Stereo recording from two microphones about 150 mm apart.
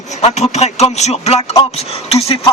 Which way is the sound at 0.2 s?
45° left (ahead or behind).